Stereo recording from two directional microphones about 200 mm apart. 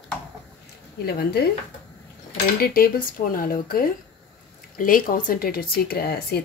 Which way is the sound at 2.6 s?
50° left (ahead or behind).